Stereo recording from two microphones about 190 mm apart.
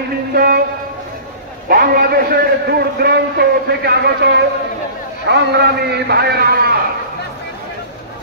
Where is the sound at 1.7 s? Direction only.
50° right (ahead or behind).